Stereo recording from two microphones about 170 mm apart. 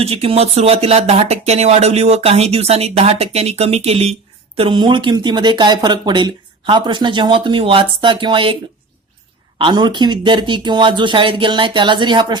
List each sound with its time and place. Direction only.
0.0 s speech: 35° right (ahead or behind)
9.6 s speech: 25° right (ahead or behind)